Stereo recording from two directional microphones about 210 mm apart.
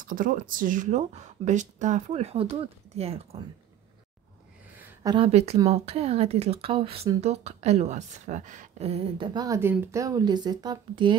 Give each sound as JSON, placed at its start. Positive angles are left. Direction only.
{"t": 0.0, "sound": "speech", "side_deg": -40}
{"t": 4.7, "sound": "a sound", "side_deg": -10}
{"t": 5.1, "sound": "a woman's voice", "side_deg": -30}